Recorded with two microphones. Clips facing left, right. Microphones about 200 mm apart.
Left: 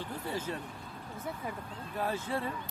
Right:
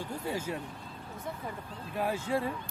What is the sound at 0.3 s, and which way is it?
Speech, 10° right (ahead or behind).